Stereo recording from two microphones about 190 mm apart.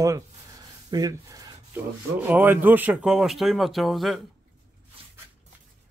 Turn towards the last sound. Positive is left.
turn(degrees=0)  # may be behind; listen again after turning